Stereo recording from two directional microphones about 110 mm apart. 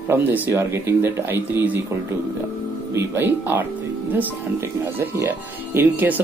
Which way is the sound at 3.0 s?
20° right (ahead or behind).